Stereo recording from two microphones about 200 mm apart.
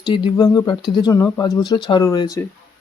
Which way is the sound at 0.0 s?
20° left (ahead or behind).